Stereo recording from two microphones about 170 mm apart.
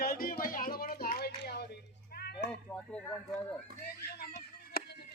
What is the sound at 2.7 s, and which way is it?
Speech, 5° left (ahead or behind).